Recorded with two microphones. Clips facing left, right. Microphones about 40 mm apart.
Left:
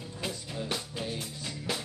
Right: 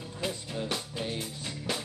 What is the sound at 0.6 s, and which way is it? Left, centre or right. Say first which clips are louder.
Music: even; centre.